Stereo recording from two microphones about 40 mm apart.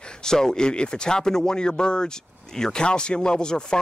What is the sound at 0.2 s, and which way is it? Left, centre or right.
Speech, centre.